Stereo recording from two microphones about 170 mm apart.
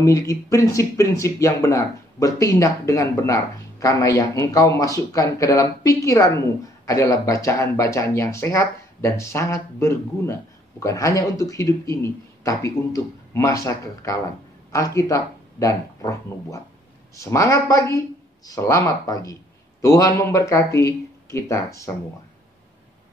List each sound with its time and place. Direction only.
0.0 s speech: 20° left (ahead or behind)